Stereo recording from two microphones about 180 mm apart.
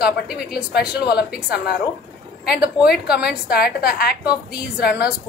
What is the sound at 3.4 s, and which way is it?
Speech, 60° left (ahead or behind).